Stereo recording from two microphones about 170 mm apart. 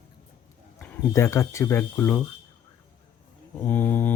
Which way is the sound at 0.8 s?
15° left (ahead or behind).